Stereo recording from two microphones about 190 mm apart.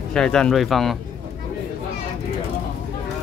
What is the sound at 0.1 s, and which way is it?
Speech, 5° left (ahead or behind).